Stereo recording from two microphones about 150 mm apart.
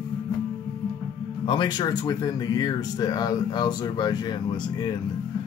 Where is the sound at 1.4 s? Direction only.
30° left (ahead or behind).